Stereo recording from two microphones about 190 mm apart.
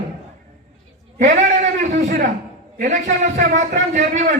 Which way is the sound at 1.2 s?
40° right (ahead or behind).